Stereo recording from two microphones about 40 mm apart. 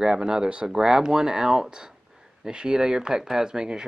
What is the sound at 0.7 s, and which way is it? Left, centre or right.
Speech, centre.